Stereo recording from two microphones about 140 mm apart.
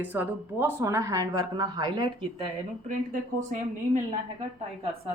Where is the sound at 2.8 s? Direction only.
65° right (ahead or behind).